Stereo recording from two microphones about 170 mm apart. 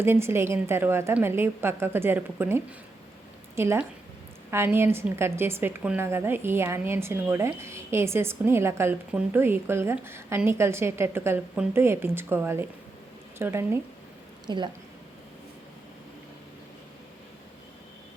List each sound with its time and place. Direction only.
0.0 s a woman's voice: 15° right (ahead or behind)
14.4 s a woman's voice: 25° right (ahead or behind)